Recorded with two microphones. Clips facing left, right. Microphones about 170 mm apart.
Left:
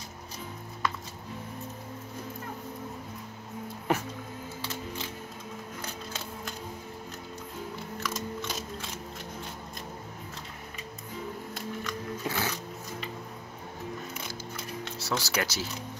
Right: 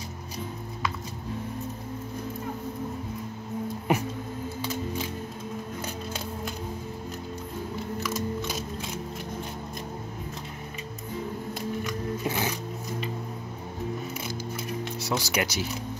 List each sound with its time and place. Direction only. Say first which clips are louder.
3.9 s music: right 3 dB; 15° right (ahead or behind)
8.0 s a sound: right 4 dB; 10° right (ahead or behind)
11.8 s roaring cats: right 4 dB; 15° right (ahead or behind)
14.9 s speech: right 1 dB; 15° right (ahead or behind)